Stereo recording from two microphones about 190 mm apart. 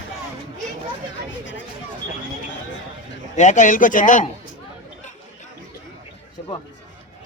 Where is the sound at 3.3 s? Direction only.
40° left (ahead or behind).